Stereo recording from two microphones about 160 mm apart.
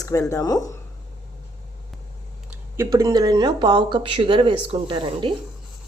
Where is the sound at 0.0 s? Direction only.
20° left (ahead or behind).